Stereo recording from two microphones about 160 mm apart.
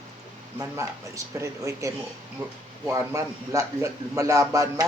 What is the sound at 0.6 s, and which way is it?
A man's voice, 20° right (ahead or behind).